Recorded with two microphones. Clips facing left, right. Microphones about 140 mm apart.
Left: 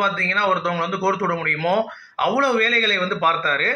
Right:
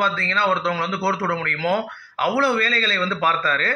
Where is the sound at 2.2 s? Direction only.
45° left (ahead or behind).